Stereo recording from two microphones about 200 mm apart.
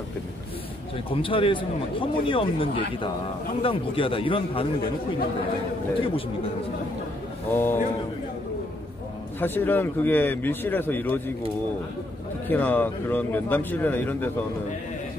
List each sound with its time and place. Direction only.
1.1 s a man's voice: 25° left (ahead or behind)
5.9 s a man's voice: 25° left (ahead or behind)
7.5 s a man's voice: 10° left (ahead or behind)
9.4 s a man's voice: 10° left (ahead or behind)
12.4 s a man's voice: 10° left (ahead or behind)